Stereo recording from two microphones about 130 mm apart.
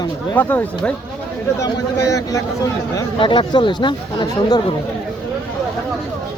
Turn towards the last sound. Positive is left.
turn(degrees=35)  # may be behind; listen again after turning